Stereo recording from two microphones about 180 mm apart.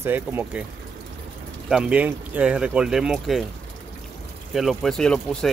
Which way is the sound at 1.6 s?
5° right (ahead or behind).